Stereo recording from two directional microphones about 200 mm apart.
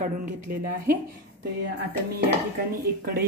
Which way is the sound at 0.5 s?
45° right (ahead or behind).